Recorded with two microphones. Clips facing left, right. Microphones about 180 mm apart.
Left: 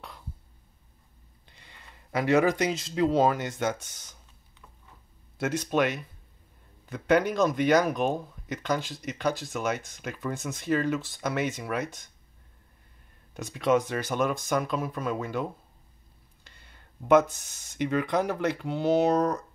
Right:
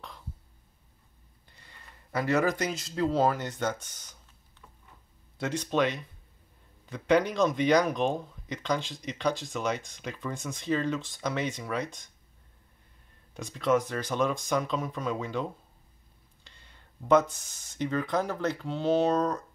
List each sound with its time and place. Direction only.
1.6 s a sound: 20° left (ahead or behind)
2.9 s speech: 15° left (ahead or behind)
5.4 s speech: 5° left (ahead or behind)
13.3 s speech: 5° left (ahead or behind)
13.6 s speech: 15° left (ahead or behind)
16.4 s a sound: 5° left (ahead or behind)
17.7 s speech: 15° left (ahead or behind)